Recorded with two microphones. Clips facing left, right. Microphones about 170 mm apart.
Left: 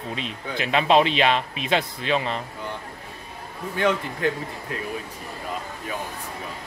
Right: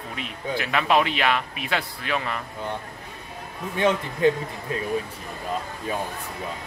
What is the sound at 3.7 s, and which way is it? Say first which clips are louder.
Speech: right 1 dB; 20° right (ahead or behind).